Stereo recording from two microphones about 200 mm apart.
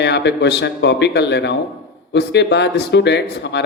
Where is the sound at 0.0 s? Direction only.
60° left (ahead or behind).